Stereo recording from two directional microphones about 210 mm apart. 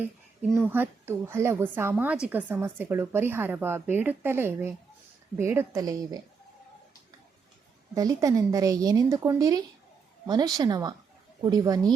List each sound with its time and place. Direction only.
0.7 s speech: 10° right (ahead or behind)
7.9 s speech: 15° right (ahead or behind)